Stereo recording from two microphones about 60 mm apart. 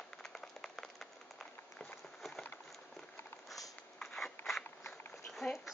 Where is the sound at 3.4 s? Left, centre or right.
Centre.